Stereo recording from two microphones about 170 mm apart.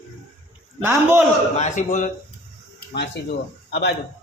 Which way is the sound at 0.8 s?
10° right (ahead or behind).